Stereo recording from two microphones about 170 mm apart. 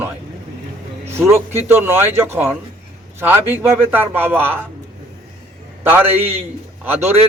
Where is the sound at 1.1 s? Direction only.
15° right (ahead or behind).